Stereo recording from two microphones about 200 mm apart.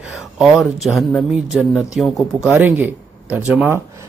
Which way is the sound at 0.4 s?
Centre (ahead or behind).